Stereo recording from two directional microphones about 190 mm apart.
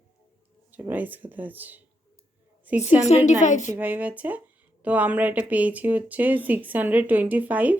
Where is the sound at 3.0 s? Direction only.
40° left (ahead or behind).